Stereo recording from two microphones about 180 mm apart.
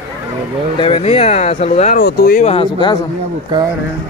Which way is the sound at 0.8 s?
30° left (ahead or behind).